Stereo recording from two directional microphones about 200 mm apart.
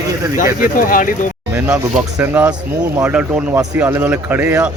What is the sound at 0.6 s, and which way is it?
Speech, 45° left (ahead or behind).